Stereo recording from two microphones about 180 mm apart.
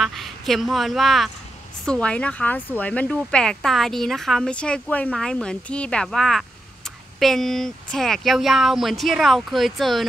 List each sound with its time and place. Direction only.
0.0 s a woman's voice: centre (ahead or behind)